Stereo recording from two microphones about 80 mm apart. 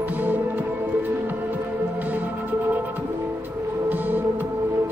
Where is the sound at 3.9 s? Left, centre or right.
Right.